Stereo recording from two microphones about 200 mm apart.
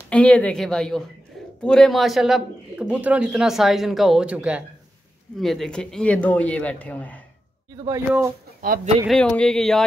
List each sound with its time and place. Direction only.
0.1 s speech: 5° left (ahead or behind)
7.7 s speech: 15° right (ahead or behind)
8.5 s speech: 45° right (ahead or behind)
9.0 s speech: 5° left (ahead or behind)